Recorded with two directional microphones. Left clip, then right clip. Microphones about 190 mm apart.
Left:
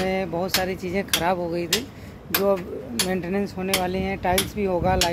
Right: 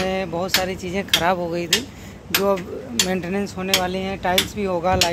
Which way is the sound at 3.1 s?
5° left (ahead or behind).